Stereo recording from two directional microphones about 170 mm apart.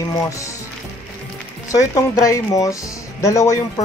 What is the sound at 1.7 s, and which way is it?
Speech, 20° left (ahead or behind).